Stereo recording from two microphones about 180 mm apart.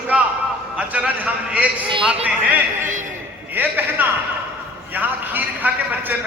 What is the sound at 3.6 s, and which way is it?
A man's voice, 10° right (ahead or behind).